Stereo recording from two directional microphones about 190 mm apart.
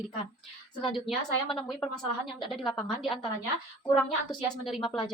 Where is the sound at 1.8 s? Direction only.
25° left (ahead or behind).